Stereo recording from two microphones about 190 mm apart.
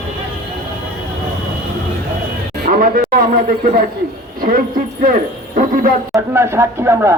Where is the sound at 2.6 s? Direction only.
45° right (ahead or behind).